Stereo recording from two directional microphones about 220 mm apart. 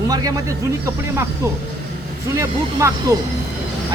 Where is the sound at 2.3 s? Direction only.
15° right (ahead or behind).